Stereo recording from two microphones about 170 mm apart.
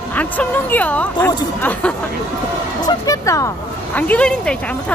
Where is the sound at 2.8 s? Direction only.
20° left (ahead or behind).